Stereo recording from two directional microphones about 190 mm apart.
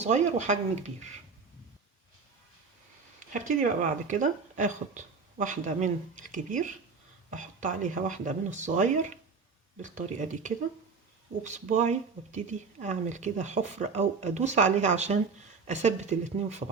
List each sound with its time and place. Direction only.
0.0 s speech: 40° right (ahead or behind)
3.2 s speech: 40° right (ahead or behind)